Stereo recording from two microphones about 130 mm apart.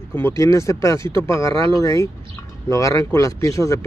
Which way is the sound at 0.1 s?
20° left (ahead or behind).